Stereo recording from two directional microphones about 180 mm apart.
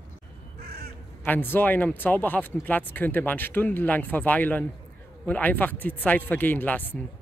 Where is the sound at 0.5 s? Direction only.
60° right (ahead or behind).